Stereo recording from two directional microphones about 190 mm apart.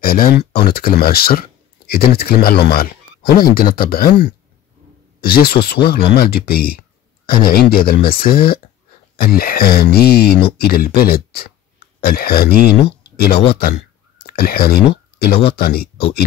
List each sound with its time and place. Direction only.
0.0 s speech: 50° left (ahead or behind)